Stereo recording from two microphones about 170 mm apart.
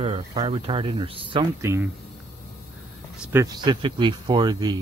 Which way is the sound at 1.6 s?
15° right (ahead or behind).